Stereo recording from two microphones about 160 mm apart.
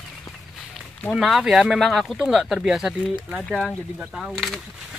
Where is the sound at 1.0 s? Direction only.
Centre (ahead or behind).